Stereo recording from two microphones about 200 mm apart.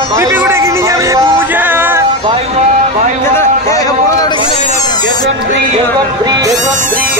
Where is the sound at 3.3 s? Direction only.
15° left (ahead or behind); by 4.8 s 35° left (ahead or behind).